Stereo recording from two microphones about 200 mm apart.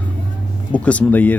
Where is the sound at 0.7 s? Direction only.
5° left (ahead or behind).